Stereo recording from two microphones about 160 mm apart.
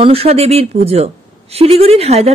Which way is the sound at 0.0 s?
40° right (ahead or behind).